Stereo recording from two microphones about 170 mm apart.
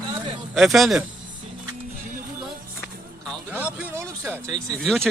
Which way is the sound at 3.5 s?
10° right (ahead or behind).